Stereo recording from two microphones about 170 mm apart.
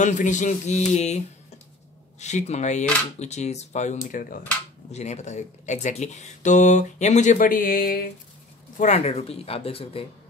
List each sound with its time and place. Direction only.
0.0 s speech: 45° left (ahead or behind)
4.9 s speech: 40° left (ahead or behind); by 8.1 s 60° left (ahead or behind)
8.7 s speech: 40° left (ahead or behind)